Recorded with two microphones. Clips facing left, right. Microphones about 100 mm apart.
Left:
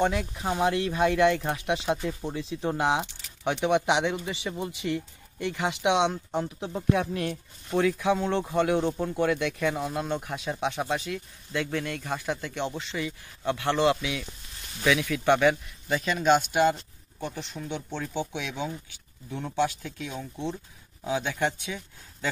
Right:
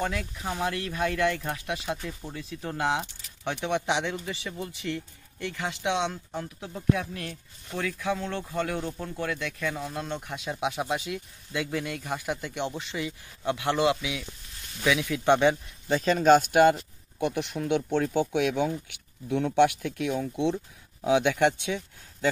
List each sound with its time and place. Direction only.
0.0 s speech: 25° left (ahead or behind)
10.3 s speech: centre (ahead or behind); by 16.0 s 25° right (ahead or behind)
16.0 s speech: 40° right (ahead or behind)
17.2 s speech: 65° right (ahead or behind)
21.1 s speech: 90° right